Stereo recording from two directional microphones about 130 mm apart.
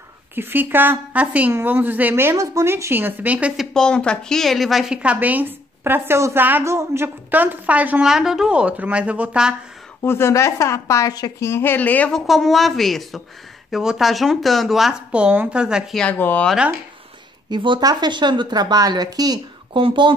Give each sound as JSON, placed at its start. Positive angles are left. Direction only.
{"t": 0.4, "sound": "a woman's voice", "side_deg": -15}
{"t": 3.7, "sound": "a woman's voice", "side_deg": 5}
{"t": 10.0, "sound": "a woman's voice", "side_deg": 20}
{"t": 12.3, "sound": "speech", "side_deg": 0}
{"t": 16.0, "sound": "speech", "side_deg": 10}
{"t": 17.5, "sound": "speech", "side_deg": -35}